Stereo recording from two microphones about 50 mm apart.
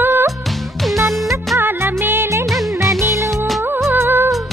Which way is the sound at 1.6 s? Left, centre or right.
Right.